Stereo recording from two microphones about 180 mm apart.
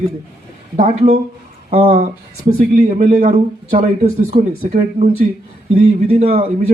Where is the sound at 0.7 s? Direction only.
35° right (ahead or behind).